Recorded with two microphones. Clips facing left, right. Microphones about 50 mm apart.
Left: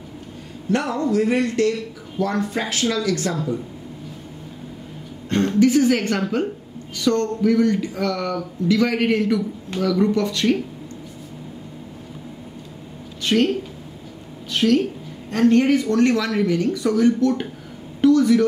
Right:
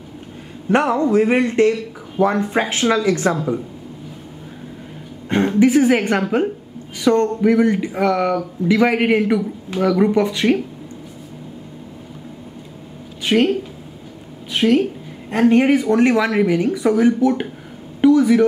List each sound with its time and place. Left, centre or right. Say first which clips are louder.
0.7 s a woman's voice: right 5 dB; right
5.3 s a woman's voice: right 2 dB; centre
13.2 s speech: right 3 dB; centre
18.0 s a sound: right 2 dB; centre